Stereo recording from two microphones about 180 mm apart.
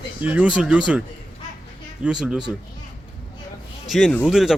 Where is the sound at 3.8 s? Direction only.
Centre (ahead or behind).